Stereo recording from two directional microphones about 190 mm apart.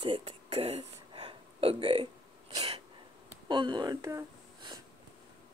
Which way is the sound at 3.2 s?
25° right (ahead or behind).